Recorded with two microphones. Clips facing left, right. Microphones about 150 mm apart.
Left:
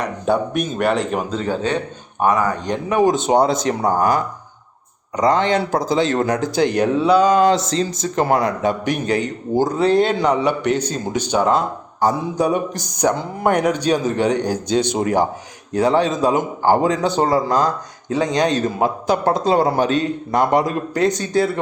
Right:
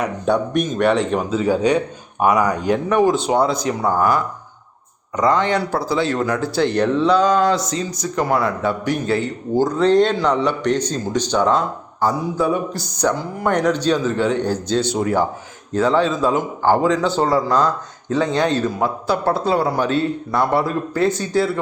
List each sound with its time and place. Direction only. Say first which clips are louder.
0.3 s speech: even; centre (ahead or behind)
2.9 s a man's voice: left 2 dB; 15° left (ahead or behind)
5.3 s a man's voice: left 2 dB; 20° left (ahead or behind)
7.4 s a man's voice: left 3 dB; 25° left (ahead or behind)